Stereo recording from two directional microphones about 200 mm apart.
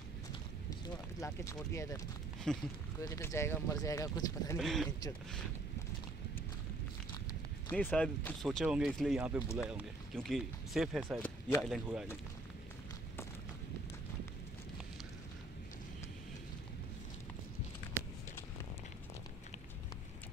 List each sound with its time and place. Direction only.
0.8 s speech: 15° left (ahead or behind)
2.5 s speech: centre (ahead or behind)
3.0 s speech: 15° left (ahead or behind)
4.6 s speech: centre (ahead or behind)
7.7 s speech: 5° left (ahead or behind)